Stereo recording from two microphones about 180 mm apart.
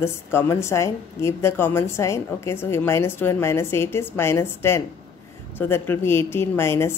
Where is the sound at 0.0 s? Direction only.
15° left (ahead or behind).